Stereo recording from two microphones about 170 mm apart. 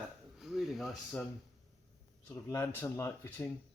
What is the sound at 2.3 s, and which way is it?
Speech, 15° left (ahead or behind).